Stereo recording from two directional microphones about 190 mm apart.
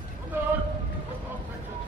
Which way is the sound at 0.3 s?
10° right (ahead or behind).